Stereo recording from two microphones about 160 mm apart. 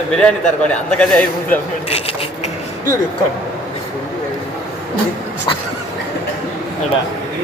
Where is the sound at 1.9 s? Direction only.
40° left (ahead or behind).